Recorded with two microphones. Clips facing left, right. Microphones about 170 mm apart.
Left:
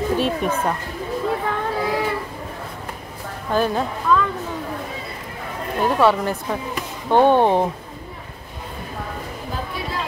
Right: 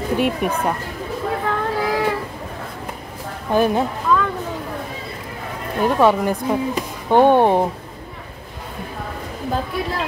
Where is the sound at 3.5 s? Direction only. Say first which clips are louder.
Right 3 dB; 15° right (ahead or behind).